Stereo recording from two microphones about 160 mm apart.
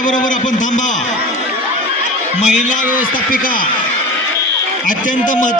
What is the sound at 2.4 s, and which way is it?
A man's voice, 50° left (ahead or behind).